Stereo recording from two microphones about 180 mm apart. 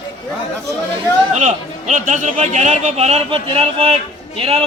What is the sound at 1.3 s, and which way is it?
A man's voice, 45° right (ahead or behind).